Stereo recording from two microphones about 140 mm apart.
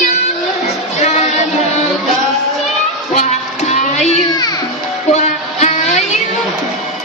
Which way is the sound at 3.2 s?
55° left (ahead or behind).